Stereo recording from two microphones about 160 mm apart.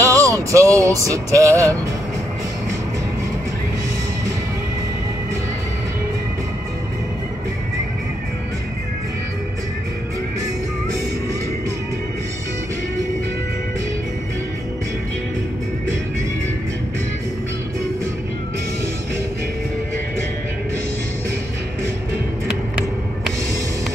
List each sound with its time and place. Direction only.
0.0 s music: 20° right (ahead or behind)